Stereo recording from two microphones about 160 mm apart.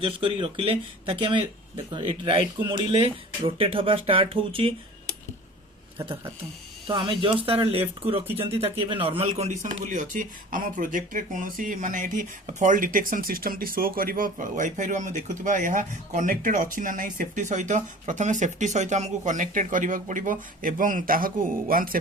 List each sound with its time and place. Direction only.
0.0 s speech: 35° right (ahead or behind)
6.8 s speech: 30° right (ahead or behind)
8.3 s speech: 15° right (ahead or behind)
8.5 s speech: 35° right (ahead or behind); by 21.9 s 60° right (ahead or behind)